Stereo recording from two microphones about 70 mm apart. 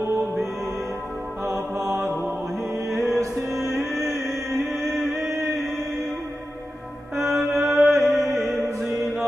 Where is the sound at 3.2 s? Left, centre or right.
Right.